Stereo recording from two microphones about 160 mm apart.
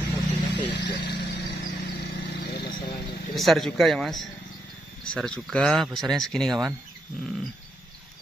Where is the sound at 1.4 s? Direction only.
90° left.